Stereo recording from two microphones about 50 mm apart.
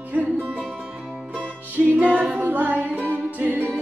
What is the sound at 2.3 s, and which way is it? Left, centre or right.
A capella, right.